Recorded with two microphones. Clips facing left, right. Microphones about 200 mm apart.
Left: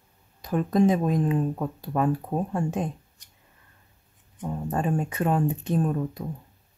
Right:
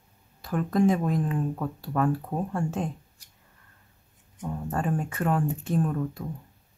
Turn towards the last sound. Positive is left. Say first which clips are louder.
# left 1 dB
turn(degrees=20)  # may be behind; listen again after turning